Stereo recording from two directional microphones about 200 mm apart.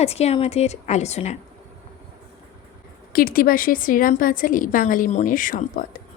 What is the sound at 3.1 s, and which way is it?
A woman's voice, 45° left (ahead or behind).